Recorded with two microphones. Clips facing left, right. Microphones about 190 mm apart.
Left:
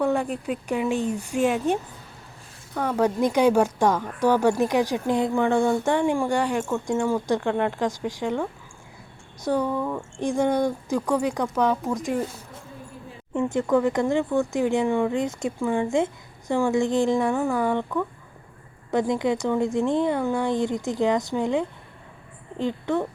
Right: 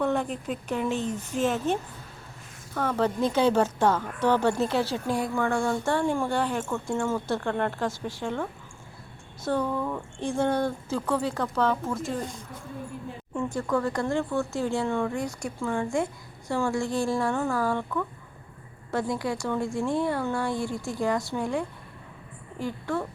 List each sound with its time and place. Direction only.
0.0 s a woman's voice: 10° left (ahead or behind)